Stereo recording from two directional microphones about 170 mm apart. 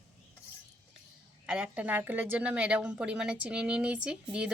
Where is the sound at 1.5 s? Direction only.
5° right (ahead or behind).